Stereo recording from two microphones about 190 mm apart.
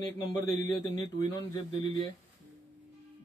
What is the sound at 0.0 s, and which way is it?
A man's voice, 15° left (ahead or behind).